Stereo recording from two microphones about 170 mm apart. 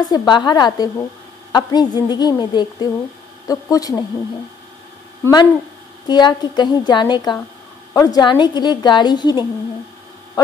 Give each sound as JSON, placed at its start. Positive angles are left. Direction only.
{"t": 0.0, "sound": "a woman's voice", "side_deg": 25}
{"t": 5.2, "sound": "a woman's voice", "side_deg": 25}